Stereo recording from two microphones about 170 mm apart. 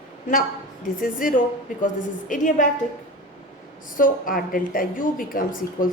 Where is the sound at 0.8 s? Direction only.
55° left (ahead or behind).